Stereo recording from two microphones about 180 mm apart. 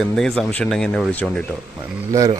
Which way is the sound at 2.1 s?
20° right (ahead or behind).